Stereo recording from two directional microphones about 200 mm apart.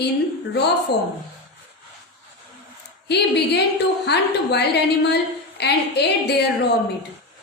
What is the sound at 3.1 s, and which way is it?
A woman's voice, 55° left (ahead or behind).